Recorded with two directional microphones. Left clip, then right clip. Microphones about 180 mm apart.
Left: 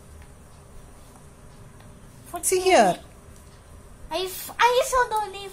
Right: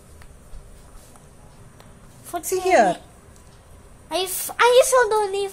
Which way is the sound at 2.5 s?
20° left (ahead or behind).